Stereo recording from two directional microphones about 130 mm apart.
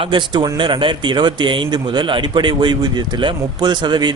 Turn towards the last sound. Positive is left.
turn(degrees=-35)  # may be behind; listen again after turning